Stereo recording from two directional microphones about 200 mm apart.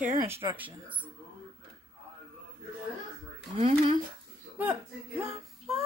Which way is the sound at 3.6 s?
30° right (ahead or behind).